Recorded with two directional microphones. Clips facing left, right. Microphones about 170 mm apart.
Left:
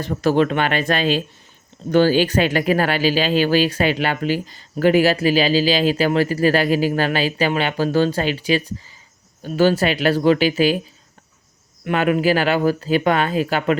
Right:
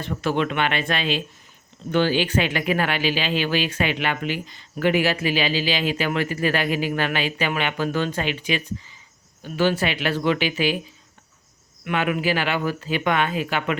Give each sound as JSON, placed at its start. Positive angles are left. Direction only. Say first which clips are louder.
{"t": 0.0, "sound": "speech", "louder": "left 6 dB", "side_deg": 40}
{"t": 11.9, "sound": "speech", "louder": "left 6 dB", "side_deg": 40}